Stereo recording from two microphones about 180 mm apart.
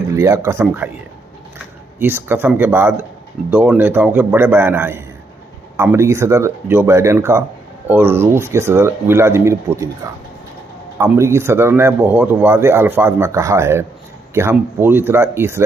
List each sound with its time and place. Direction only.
0.1 s speech: 15° right (ahead or behind)
2.0 s speech: 10° right (ahead or behind)
11.0 s speech: 15° right (ahead or behind)